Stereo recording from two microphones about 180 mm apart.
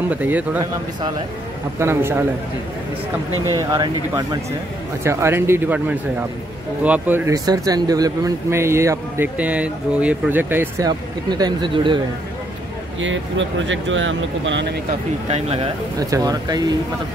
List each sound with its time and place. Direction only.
0.1 s speech: 10° right (ahead or behind)
1.8 s speech: 15° right (ahead or behind)
3.5 s speech: 20° right (ahead or behind)
10.9 s speech: 25° right (ahead or behind)
13.0 s speech: 90° right
15.2 s speech: 35° right (ahead or behind)
16.0 s speech: 20° right (ahead or behind)